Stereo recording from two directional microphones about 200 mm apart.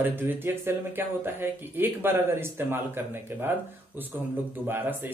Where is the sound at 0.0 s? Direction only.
10° right (ahead or behind).